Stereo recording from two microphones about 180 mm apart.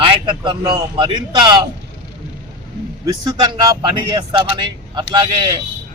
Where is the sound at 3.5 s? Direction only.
25° right (ahead or behind).